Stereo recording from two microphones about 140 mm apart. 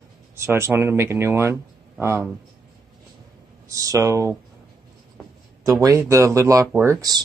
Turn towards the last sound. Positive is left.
turn(degrees=-25)  # may be behind; listen again after turning